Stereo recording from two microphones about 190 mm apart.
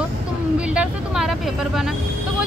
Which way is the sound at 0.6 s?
5° right (ahead or behind).